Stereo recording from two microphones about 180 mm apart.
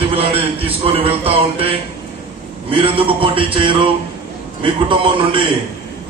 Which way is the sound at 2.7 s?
30° right (ahead or behind).